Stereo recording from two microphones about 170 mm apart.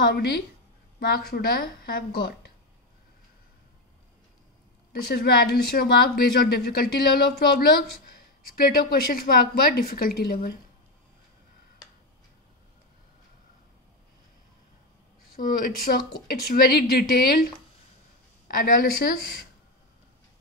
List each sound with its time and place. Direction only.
0.1 s a woman's voice: 70° left (ahead or behind)
5.0 s speech: 65° left (ahead or behind)
15.3 s speech: 55° left (ahead or behind)
18.5 s speech: 60° left (ahead or behind)